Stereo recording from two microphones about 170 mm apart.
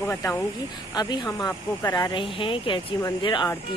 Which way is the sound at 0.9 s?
25° left (ahead or behind).